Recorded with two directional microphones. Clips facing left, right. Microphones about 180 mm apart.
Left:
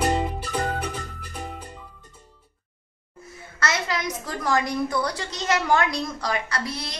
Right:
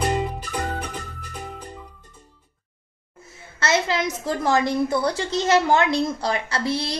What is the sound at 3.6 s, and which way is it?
A woman's voice, 25° right (ahead or behind).